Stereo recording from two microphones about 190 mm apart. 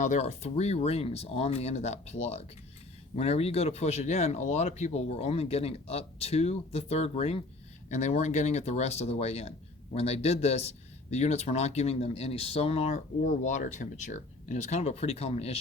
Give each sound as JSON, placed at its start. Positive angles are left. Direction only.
{"t": 0.0, "sound": "speech", "side_deg": 40}